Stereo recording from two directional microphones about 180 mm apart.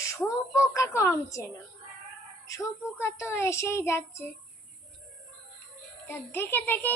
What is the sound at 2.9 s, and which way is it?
A child's voice, 15° left (ahead or behind).